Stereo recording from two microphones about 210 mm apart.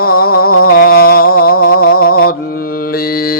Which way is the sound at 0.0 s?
45° left (ahead or behind).